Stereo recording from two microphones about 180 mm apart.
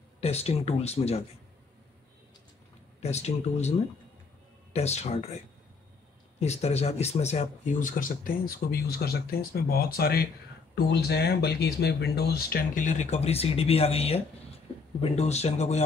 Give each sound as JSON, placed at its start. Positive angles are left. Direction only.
{"t": 0.2, "sound": "speech", "side_deg": 35}
{"t": 3.0, "sound": "speech", "side_deg": 40}
{"t": 4.7, "sound": "speech", "side_deg": 35}
{"t": 6.4, "sound": "speech", "side_deg": 35}